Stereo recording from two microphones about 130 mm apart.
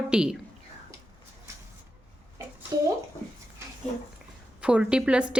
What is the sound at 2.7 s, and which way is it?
Speech, 25° right (ahead or behind).